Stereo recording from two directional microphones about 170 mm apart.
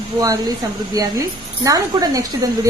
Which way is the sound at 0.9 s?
20° right (ahead or behind).